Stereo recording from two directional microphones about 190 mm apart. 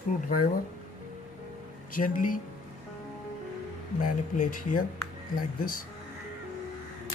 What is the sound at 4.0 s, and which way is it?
Speech, 45° left (ahead or behind).